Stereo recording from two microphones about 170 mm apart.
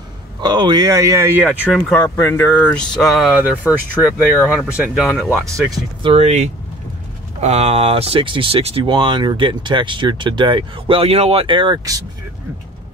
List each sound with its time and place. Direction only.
0.4 s speech: 25° right (ahead or behind); by 1.8 s 10° right (ahead or behind)
2.1 s speech: 15° left (ahead or behind); by 3.7 s 5° right (ahead or behind)
4.0 s speech: 10° left (ahead or behind)
4.6 s speech: 5° right (ahead or behind)
5.4 s speech: 20° right (ahead or behind)
6.1 s speech: 40° right (ahead or behind); by 12.0 s 20° right (ahead or behind)